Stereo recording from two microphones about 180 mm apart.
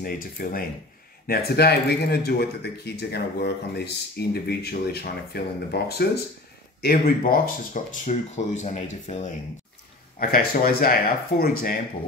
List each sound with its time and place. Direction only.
0.0 s speech: 50° left (ahead or behind)
10.1 s speech: 55° left (ahead or behind)